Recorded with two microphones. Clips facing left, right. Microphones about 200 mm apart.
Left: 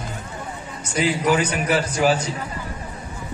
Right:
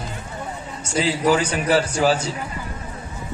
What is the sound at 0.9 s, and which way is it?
A man's voice, 30° right (ahead or behind).